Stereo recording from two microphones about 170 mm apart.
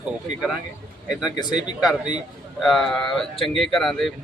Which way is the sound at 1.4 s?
25° left (ahead or behind).